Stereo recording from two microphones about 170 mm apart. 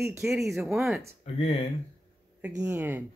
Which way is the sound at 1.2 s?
35° left (ahead or behind).